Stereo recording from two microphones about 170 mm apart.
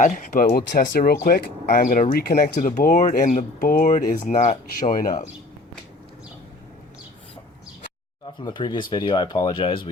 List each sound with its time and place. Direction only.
0.0 s speech: 45° left (ahead or behind)
0.4 s speech: 65° left (ahead or behind)
1.8 s speech: 55° left (ahead or behind)
2.1 s speech: 65° left (ahead or behind); by 5.3 s 45° left (ahead or behind)
8.4 s speech: 25° left (ahead or behind)